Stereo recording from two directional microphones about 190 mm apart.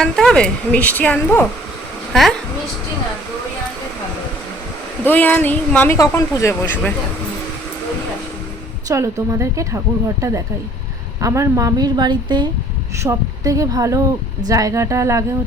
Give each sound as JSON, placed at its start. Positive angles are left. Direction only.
{"t": 0.0, "sound": "speech", "side_deg": 5}
{"t": 5.0, "sound": "speech", "side_deg": 10}
{"t": 8.9, "sound": "a woman's voice", "side_deg": -15}